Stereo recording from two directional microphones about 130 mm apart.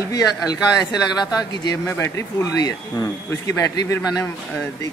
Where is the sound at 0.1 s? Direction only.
30° left (ahead or behind).